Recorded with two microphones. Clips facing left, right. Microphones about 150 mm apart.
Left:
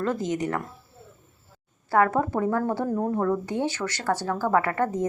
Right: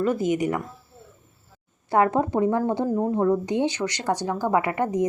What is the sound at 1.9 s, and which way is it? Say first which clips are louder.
A woman's voice: right 1 dB; 20° right (ahead or behind).